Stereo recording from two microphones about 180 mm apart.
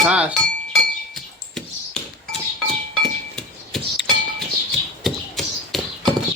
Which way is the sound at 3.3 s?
Centre (ahead or behind).